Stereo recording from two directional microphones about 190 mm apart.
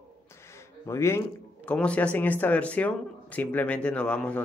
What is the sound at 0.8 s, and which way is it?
Speech, 15° left (ahead or behind).